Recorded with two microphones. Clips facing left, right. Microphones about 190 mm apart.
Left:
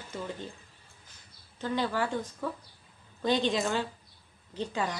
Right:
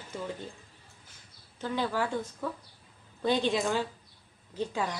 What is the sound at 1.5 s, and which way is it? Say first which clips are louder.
A woman's voice: left 1 dB; 10° right (ahead or behind).